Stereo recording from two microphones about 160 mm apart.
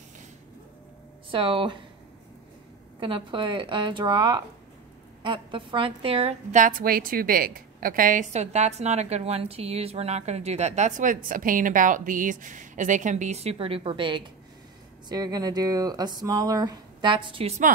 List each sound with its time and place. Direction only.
1.3 s a woman's voice: 30° right (ahead or behind)
3.0 s a woman's voice: 30° right (ahead or behind)
6.6 s a woman's voice: 60° right (ahead or behind); by 17.6 s 35° right (ahead or behind)